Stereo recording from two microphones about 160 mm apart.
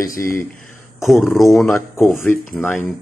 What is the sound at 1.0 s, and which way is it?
Speech, centre (ahead or behind).